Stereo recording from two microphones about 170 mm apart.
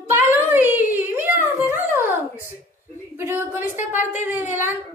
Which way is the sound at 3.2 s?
15° right (ahead or behind).